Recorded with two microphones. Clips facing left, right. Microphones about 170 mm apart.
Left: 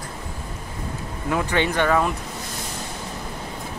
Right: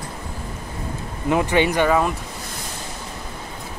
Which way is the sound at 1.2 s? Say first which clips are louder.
Right 4 dB; 15° right (ahead or behind).